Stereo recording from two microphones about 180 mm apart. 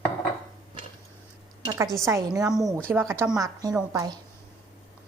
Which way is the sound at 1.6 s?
20° right (ahead or behind).